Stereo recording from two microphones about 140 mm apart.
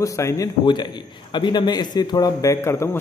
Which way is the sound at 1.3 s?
35° left (ahead or behind).